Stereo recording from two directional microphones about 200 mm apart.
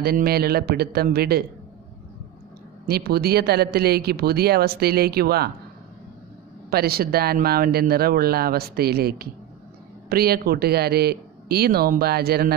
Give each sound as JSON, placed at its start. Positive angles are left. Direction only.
{"t": 0.0, "sound": "a man's voice", "side_deg": -50}
{"t": 2.9, "sound": "a man's voice", "side_deg": -50}
{"t": 6.7, "sound": "a man's voice", "side_deg": -50}